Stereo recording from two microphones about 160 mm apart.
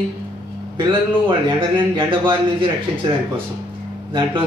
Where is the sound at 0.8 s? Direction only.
30° right (ahead or behind).